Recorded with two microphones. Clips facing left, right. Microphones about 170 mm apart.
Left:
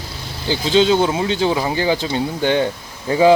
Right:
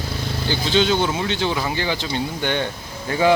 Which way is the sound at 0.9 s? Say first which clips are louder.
Left 4 dB; 35° left (ahead or behind).